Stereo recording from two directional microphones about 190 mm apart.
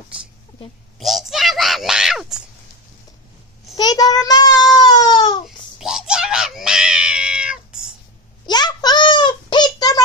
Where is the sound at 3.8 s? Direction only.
20° left (ahead or behind).